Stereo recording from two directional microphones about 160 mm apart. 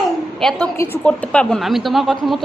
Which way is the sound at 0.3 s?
5° left (ahead or behind).